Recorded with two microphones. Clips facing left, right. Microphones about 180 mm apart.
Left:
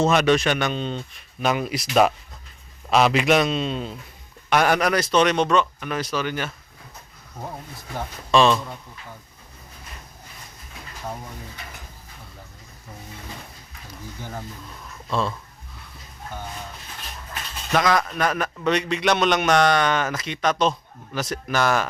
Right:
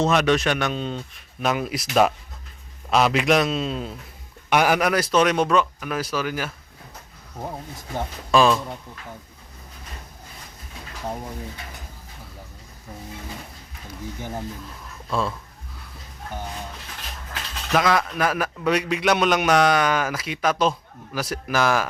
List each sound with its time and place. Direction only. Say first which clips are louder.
0.0 s a man's voice: left 1 dB; centre (ahead or behind)
8.3 s speech: even; 5° right (ahead or behind)
14.2 s a man's voice: right 2 dB; 15° right (ahead or behind)
15.1 s speech: even; centre (ahead or behind)
17.7 s a man's voice: even; 5° right (ahead or behind)